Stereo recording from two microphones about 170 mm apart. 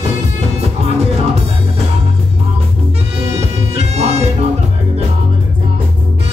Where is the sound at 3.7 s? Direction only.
40° right (ahead or behind).